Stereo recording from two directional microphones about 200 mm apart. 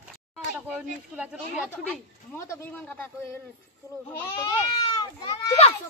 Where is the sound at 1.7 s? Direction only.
10° left (ahead or behind).